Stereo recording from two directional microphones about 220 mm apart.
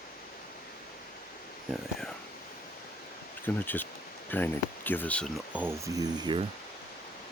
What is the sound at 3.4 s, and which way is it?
Speech, 10° left (ahead or behind).